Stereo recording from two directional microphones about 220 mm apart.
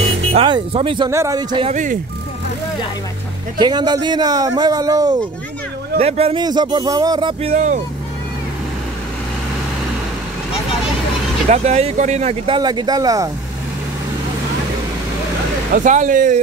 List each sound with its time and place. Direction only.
0.3 s speech: 25° right (ahead or behind)
1.7 s speech: 35° right (ahead or behind)
3.5 s speech: 20° right (ahead or behind)
5.9 s speech: 25° right (ahead or behind)
7.5 s speech: 35° right (ahead or behind)
11.4 s speech: 30° right (ahead or behind)
12.5 s speech: 20° right (ahead or behind)
15.7 s speech: 35° right (ahead or behind)